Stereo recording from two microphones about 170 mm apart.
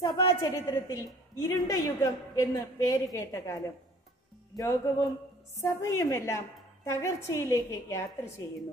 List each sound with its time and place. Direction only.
0.0 s a woman's voice: 25° left (ahead or behind)